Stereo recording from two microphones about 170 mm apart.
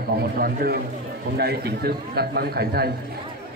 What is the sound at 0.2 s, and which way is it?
A man's voice, 65° right (ahead or behind).